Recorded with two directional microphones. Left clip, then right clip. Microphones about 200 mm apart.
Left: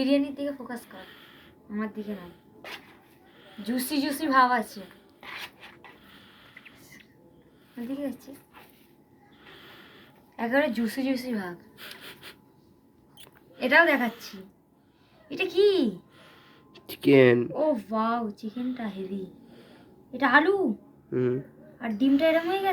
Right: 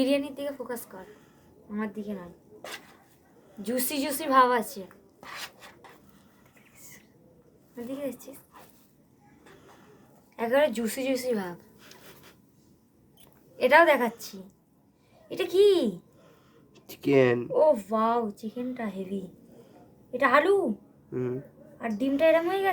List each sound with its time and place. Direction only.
0.0 s a woman's voice: 45° right (ahead or behind)
3.6 s speech: 45° right (ahead or behind)
7.9 s speech: 45° right (ahead or behind)
10.3 s speech: 45° right (ahead or behind)
11.8 s gasp: 25° left (ahead or behind)
13.6 s speech: 45° right (ahead or behind)
16.7 s speech: 25° left (ahead or behind)
17.5 s speech: 45° right (ahead or behind)
20.1 s a woman's voice: 40° right (ahead or behind)
21.1 s speech: 20° left (ahead or behind)
21.8 s a woman's voice: 40° right (ahead or behind)